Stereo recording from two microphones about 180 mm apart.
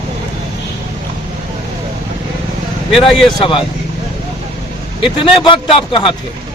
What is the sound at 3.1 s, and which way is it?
Speech, centre (ahead or behind).